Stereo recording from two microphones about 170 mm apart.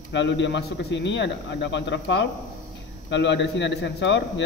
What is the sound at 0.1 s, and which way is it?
A man's voice, 90° left.